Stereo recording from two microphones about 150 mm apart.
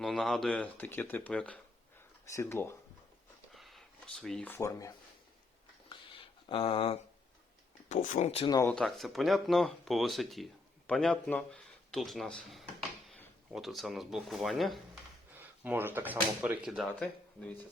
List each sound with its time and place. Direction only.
0.0 s speech: centre (ahead or behind)
2.3 s speech: 15° left (ahead or behind)
3.5 s a sound: centre (ahead or behind)
4.5 s speech: 20° left (ahead or behind)
5.9 s a sound: 35° left (ahead or behind)
7.9 s speech: 55° left (ahead or behind)
8.6 s speech: 5° left (ahead or behind)
15.4 s speech: 15° right (ahead or behind)
16.9 s speech: 10° left (ahead or behind)